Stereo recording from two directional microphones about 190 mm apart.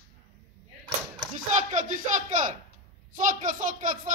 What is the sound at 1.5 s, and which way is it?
A man's voice, 40° right (ahead or behind).